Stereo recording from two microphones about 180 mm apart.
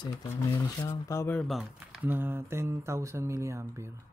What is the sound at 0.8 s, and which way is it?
Speech, 15° left (ahead or behind).